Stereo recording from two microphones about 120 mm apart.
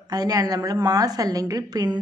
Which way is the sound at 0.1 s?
30° right (ahead or behind).